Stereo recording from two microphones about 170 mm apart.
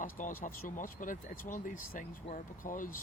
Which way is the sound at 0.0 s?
50° left (ahead or behind).